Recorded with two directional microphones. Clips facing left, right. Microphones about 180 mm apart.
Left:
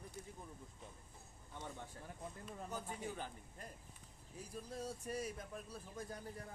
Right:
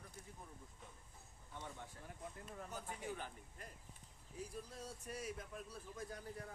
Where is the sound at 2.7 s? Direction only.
35° left (ahead or behind).